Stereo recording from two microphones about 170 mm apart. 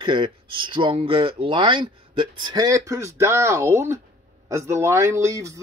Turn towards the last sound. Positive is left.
turn(degrees=-15)  # may be behind; listen again after turning